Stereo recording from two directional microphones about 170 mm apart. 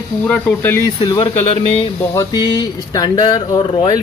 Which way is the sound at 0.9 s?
25° left (ahead or behind).